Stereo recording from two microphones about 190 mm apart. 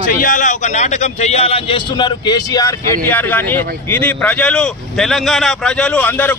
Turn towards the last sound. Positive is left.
turn(degrees=10)  # may be behind; listen again after turning